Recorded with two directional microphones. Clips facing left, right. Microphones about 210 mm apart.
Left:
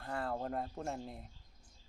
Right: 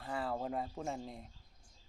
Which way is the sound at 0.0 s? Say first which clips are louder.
Even; centre (ahead or behind).